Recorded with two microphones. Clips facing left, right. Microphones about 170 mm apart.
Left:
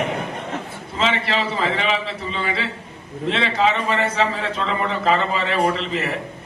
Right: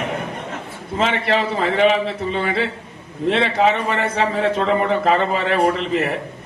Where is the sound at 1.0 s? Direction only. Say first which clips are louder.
Right 3 dB; 55° right (ahead or behind).